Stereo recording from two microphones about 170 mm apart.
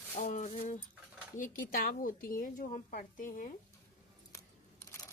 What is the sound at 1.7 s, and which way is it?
A woman's voice, 60° left (ahead or behind).